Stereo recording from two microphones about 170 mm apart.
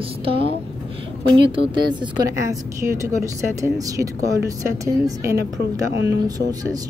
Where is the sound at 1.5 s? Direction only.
30° right (ahead or behind).